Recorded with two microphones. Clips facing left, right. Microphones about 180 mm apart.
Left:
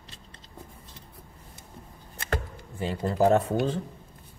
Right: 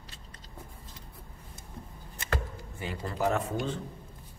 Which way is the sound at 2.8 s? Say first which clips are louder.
Left 7 dB; 30° left (ahead or behind).